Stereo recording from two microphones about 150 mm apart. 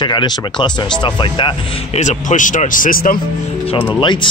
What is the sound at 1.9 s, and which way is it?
Speech, 50° left (ahead or behind).